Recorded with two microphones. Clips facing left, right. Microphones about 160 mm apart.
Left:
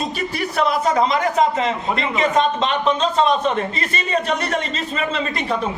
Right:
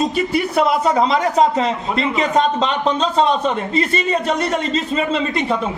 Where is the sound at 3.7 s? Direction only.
30° right (ahead or behind).